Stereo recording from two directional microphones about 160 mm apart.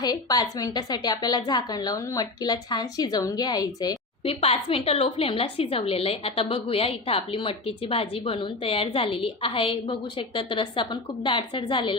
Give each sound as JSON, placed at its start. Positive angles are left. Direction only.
{"t": 0.0, "sound": "a woman's voice", "side_deg": 25}
{"t": 4.2, "sound": "a woman's voice", "side_deg": 35}